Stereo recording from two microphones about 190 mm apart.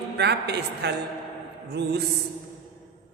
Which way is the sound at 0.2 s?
60° right (ahead or behind).